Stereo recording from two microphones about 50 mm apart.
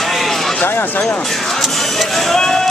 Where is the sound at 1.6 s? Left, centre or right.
Centre.